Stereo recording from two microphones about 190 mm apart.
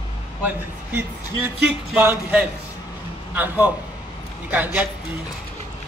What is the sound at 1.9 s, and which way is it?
Speech, 10° right (ahead or behind).